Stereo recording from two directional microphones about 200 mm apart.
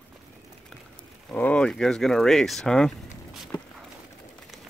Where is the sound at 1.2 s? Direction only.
5° left (ahead or behind).